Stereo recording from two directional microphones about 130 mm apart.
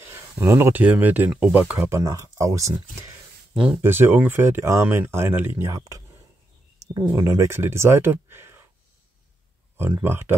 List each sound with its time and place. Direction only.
0.1 s speech: 20° right (ahead or behind)
2.0 s speech: 25° right (ahead or behind)
3.5 s speech: 10° right (ahead or behind)
9.8 s speech: 15° right (ahead or behind)